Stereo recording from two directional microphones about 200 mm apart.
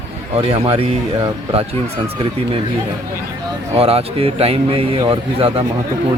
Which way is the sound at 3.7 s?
30° right (ahead or behind).